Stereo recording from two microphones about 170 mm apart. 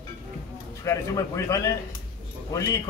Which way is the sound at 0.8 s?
20° left (ahead or behind).